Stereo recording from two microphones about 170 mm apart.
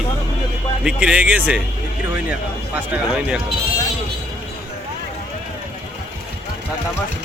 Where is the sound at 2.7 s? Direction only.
5° right (ahead or behind).